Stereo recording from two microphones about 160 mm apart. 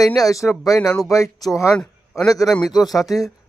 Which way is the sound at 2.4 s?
5° left (ahead or behind).